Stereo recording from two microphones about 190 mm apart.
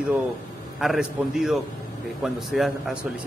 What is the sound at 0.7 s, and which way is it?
A man's voice, centre (ahead or behind).